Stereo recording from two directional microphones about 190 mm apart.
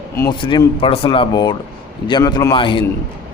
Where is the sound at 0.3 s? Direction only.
25° left (ahead or behind).